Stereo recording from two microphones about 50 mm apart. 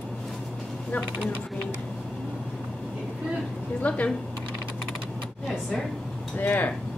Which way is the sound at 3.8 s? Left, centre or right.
Left.